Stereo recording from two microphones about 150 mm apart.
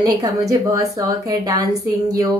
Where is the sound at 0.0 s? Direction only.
25° right (ahead or behind).